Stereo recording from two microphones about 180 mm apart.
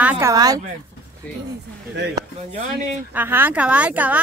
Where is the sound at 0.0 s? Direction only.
10° right (ahead or behind).